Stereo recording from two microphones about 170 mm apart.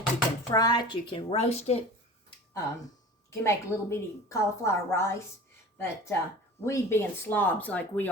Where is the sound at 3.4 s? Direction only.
15° left (ahead or behind).